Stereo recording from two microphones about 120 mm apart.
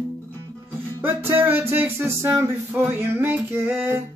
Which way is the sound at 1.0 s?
20° right (ahead or behind).